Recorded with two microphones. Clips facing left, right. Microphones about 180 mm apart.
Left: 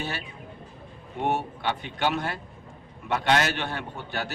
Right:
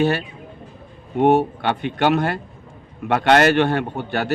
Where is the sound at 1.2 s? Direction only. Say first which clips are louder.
Right 11 dB; 70° right (ahead or behind).